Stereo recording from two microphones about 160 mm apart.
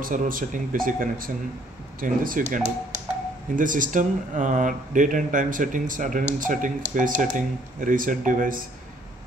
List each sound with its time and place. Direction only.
0.0 s speech: 60° right (ahead or behind)